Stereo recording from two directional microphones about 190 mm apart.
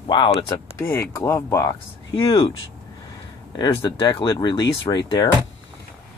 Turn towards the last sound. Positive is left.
turn(degrees=20)  # may be behind; listen again after turning